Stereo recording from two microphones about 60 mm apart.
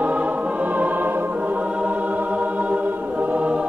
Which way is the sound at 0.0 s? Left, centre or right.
Right.